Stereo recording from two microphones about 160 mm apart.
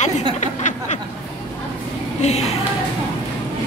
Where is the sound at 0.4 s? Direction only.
50° left (ahead or behind).